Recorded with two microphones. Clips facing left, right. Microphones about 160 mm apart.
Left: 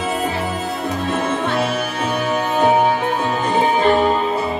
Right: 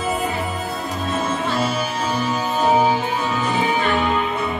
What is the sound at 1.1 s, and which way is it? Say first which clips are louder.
Music: left 1 dB; 65° left (ahead or behind).